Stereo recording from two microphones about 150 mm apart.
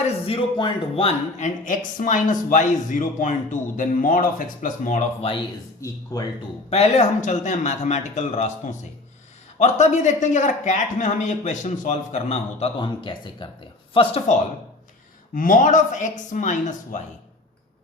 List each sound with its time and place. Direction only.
0.1 s speech: 40° left (ahead or behind)
1.5 s a man's voice: 60° left (ahead or behind)
6.1 s speech: 25° left (ahead or behind)
6.7 s a man's voice: 45° left (ahead or behind)
9.6 s a man's voice: 50° left (ahead or behind)
15.4 s a man's voice: 60° left (ahead or behind)